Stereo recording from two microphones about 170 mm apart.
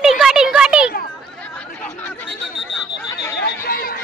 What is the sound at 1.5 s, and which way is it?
Chatter, 10° left (ahead or behind).